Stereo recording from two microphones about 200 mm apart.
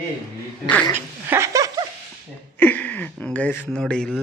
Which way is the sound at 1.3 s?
15° right (ahead or behind).